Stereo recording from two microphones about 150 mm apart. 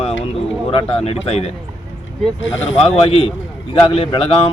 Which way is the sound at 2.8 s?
40° left (ahead or behind).